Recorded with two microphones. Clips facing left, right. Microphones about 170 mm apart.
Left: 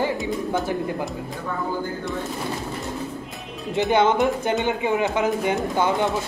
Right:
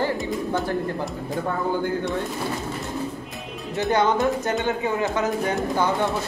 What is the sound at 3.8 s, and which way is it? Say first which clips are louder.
Speech: left 2 dB; 20° left (ahead or behind).